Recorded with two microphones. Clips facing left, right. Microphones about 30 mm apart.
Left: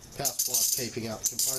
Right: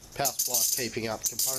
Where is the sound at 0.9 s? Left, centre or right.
Right.